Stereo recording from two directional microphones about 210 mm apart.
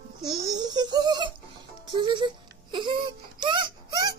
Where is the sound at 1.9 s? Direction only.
20° right (ahead or behind).